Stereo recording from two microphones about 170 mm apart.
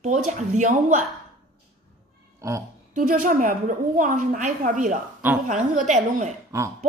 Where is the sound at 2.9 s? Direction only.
50° right (ahead or behind).